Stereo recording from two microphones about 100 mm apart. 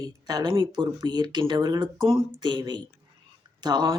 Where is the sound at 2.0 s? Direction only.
60° right (ahead or behind).